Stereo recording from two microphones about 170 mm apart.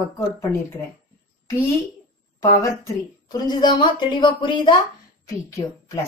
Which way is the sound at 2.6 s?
20° left (ahead or behind).